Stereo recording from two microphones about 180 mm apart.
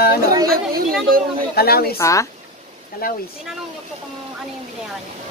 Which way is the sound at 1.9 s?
15° left (ahead or behind).